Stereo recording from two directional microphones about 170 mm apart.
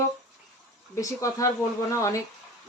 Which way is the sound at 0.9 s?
20° left (ahead or behind).